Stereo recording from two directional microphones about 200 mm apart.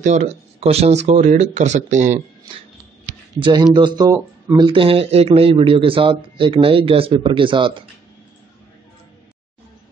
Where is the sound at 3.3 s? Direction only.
25° right (ahead or behind).